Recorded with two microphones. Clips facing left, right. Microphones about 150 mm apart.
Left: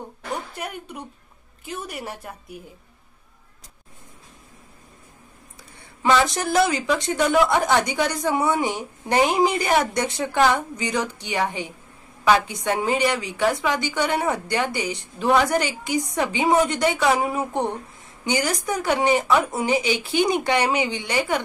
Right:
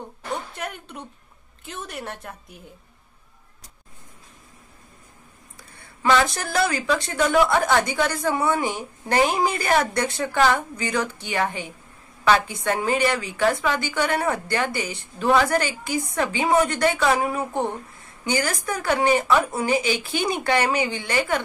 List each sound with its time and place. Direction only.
0.6 s a woman's voice: 5° left (ahead or behind)
5.6 s a woman's voice: 20° left (ahead or behind)